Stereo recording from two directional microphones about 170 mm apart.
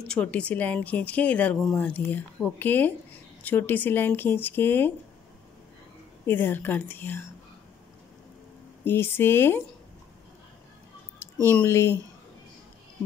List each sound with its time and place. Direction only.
0.1 s speech: 5° left (ahead or behind)
6.2 s speech: 10° left (ahead or behind)
8.8 s speech: 15° left (ahead or behind)
11.5 s speech: 15° left (ahead or behind)